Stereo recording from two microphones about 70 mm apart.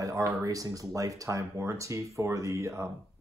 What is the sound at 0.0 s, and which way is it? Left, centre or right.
Speech, right.